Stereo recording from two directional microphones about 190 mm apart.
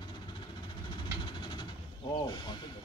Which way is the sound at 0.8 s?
25° left (ahead or behind).